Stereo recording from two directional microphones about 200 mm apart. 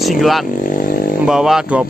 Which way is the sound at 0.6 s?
45° left (ahead or behind).